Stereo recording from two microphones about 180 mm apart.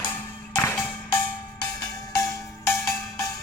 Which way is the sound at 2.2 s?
15° left (ahead or behind).